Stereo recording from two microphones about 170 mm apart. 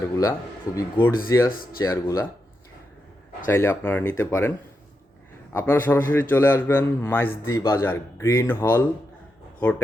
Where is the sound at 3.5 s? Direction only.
15° left (ahead or behind).